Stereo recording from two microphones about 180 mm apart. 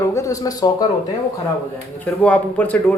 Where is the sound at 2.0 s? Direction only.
10° left (ahead or behind).